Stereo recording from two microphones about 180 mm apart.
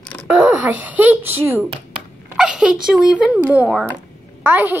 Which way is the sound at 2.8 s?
5° right (ahead or behind).